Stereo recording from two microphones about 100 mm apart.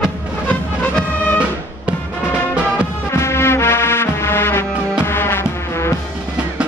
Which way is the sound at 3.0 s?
25° left (ahead or behind).